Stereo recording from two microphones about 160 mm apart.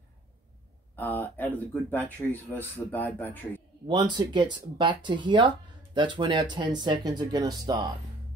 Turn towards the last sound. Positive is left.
turn(degrees=-25)  # may be behind; listen again after turning